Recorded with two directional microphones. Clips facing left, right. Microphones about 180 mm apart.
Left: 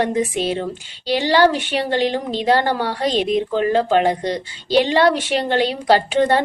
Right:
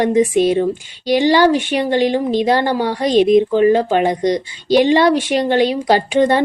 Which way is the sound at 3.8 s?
15° right (ahead or behind).